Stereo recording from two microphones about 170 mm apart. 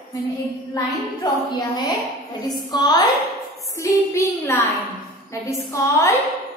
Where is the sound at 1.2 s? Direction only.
25° left (ahead or behind).